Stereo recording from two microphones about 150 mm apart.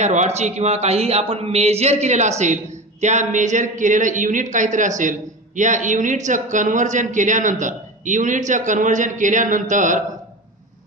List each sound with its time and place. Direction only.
0.0 s a man's voice: 50° right (ahead or behind)